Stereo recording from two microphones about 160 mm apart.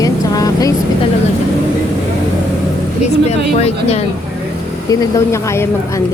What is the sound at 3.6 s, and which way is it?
Speech, 40° left (ahead or behind).